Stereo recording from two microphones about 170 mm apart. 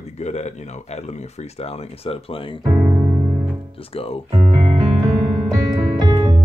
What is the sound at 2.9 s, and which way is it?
Piano, 10° right (ahead or behind).